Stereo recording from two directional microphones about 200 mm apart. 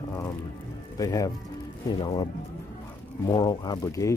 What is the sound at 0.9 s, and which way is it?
Speech, 15° left (ahead or behind).